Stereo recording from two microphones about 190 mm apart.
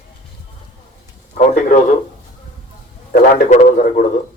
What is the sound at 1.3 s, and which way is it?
Speech, 40° left (ahead or behind).